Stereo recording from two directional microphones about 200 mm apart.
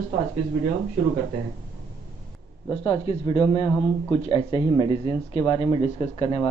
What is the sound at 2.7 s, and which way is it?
Speech, 25° left (ahead or behind).